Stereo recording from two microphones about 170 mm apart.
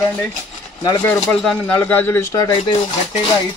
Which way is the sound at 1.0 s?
5° left (ahead or behind).